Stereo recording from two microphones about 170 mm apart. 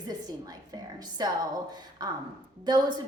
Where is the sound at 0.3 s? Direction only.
25° right (ahead or behind).